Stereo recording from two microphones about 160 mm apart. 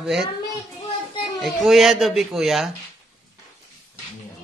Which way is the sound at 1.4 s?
Centre (ahead or behind).